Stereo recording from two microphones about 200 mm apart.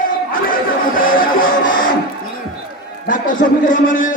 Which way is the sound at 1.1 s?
45° left (ahead or behind).